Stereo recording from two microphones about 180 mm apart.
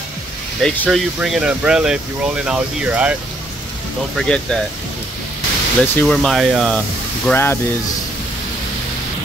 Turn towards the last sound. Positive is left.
turn(degrees=10)  # may be behind; listen again after turning